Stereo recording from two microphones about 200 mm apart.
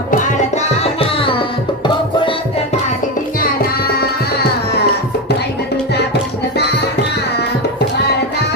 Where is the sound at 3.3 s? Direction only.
50° left (ahead or behind).